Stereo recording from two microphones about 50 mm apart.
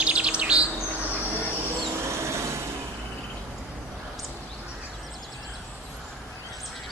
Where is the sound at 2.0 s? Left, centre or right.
Right.